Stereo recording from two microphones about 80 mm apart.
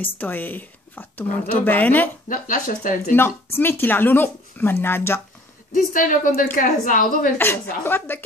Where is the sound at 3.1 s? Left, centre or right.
Left.